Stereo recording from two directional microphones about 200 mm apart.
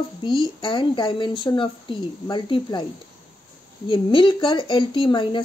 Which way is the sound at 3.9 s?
25° left (ahead or behind).